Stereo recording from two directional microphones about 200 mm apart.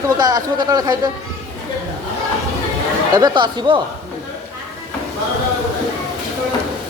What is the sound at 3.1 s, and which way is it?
Speech, 20° right (ahead or behind).